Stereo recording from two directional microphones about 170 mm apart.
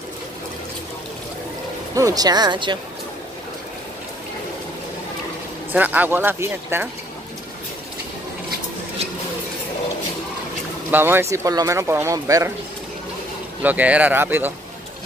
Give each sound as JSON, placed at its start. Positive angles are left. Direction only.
{"t": 2.0, "sound": "speech", "side_deg": -20}
{"t": 5.7, "sound": "speech", "side_deg": -10}
{"t": 10.9, "sound": "speech", "side_deg": -10}
{"t": 13.6, "sound": "speech", "side_deg": -10}